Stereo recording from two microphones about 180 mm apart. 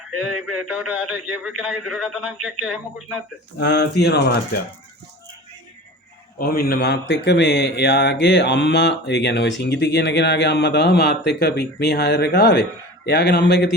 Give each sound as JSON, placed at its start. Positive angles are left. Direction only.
{"t": 0.4, "sound": "a man's voice", "side_deg": -5}
{"t": 3.6, "sound": "a man's voice", "side_deg": 70}
{"t": 6.4, "sound": "a man's voice", "side_deg": 55}